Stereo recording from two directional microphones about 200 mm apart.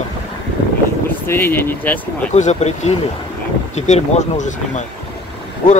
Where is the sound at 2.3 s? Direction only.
35° left (ahead or behind).